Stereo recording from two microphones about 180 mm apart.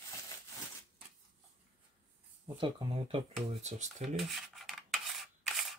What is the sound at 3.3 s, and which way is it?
Speech, 40° right (ahead or behind).